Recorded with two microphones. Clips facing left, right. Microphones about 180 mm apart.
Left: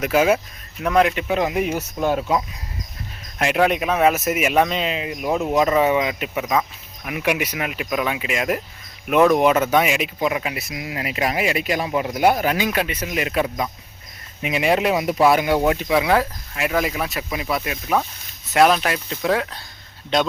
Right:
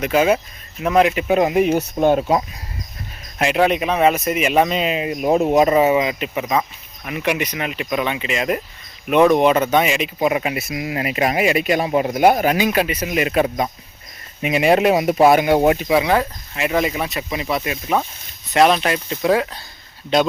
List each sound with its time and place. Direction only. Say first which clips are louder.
0.0 s speech: right 1 dB; 5° left (ahead or behind)
1.4 s speech: right 7 dB; 25° right (ahead or behind)
3.3 s speech: right 2 dB; centre (ahead or behind)
4.9 s speech: right 5 dB; 30° right (ahead or behind)
5.7 s speech: right 3 dB; 5° right (ahead or behind)
10.2 s speech: right 4 dB; 20° right (ahead or behind)
12.5 s speech: right 4 dB; 15° right (ahead or behind)
14.4 s speech: right 4 dB; 25° right (ahead or behind)
14.7 s speech: right 4 dB; 45° right (ahead or behind)
14.9 s speech: right 3 dB; 25° right (ahead or behind)
15.9 s speech: right 1 dB; centre (ahead or behind)